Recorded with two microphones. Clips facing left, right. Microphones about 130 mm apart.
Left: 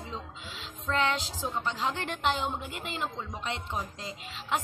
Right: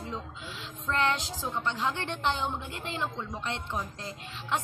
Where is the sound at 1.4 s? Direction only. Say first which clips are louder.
Even; 5° left (ahead or behind).